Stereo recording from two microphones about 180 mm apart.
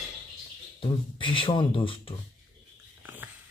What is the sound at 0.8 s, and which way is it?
Speech, 30° left (ahead or behind).